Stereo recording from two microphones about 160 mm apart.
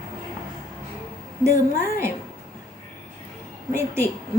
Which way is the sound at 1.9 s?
15° right (ahead or behind).